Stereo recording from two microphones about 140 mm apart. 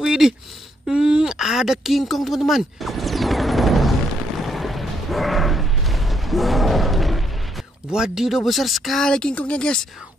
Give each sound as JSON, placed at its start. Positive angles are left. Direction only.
{"t": 0.0, "sound": "a sound", "side_deg": -5}
{"t": 0.8, "sound": "speech", "side_deg": -5}
{"t": 4.5, "sound": "mechanisms", "side_deg": 0}
{"t": 7.9, "sound": "speech", "side_deg": -5}